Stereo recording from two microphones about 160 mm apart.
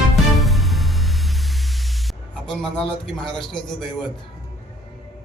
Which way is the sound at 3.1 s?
5° left (ahead or behind).